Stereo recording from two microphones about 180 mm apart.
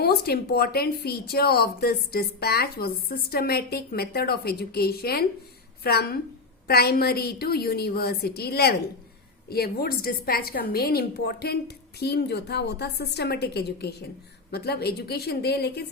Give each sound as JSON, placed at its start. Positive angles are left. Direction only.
{"t": 0.0, "sound": "speech", "side_deg": 60}